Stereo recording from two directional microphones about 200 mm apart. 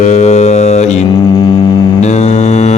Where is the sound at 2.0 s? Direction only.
35° left (ahead or behind).